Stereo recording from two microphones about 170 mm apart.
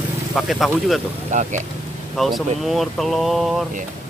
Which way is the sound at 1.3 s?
45° right (ahead or behind).